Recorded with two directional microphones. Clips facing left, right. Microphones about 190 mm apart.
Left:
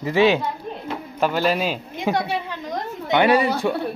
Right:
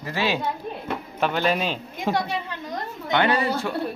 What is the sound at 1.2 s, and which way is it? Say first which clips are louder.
Speech: left 3 dB; 5° left (ahead or behind).